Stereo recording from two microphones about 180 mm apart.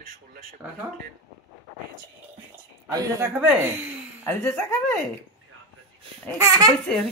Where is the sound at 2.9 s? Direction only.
20° right (ahead or behind).